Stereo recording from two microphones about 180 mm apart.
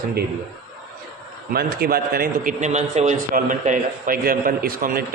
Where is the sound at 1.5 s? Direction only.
60° right (ahead or behind).